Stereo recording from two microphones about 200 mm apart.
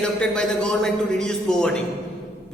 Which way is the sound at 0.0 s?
5° left (ahead or behind).